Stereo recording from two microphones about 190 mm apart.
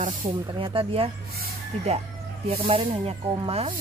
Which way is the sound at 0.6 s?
30° right (ahead or behind).